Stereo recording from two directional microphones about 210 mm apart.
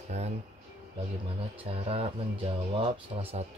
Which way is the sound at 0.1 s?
30° right (ahead or behind).